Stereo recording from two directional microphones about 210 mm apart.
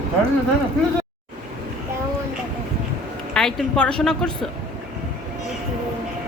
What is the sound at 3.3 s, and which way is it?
A woman's voice, 5° left (ahead or behind).